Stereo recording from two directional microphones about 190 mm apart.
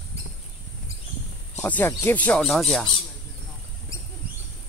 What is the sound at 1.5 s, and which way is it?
Speech, 10° left (ahead or behind).